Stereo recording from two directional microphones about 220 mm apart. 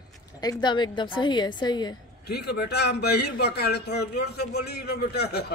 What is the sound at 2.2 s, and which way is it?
A man's voice, 45° left (ahead or behind).